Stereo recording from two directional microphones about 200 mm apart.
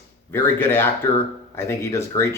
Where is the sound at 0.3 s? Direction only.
10° left (ahead or behind).